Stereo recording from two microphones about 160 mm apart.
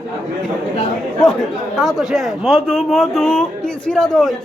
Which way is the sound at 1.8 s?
Centre (ahead or behind).